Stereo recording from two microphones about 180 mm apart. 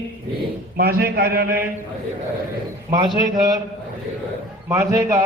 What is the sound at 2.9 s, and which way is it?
Speech, 25° right (ahead or behind).